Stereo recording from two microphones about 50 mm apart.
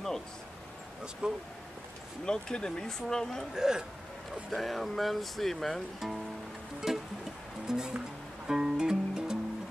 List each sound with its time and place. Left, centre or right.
1.2 s speech: right
2.2 s speech: centre
3.5 s speech: centre
4.5 s speech: centre
6.9 s music: centre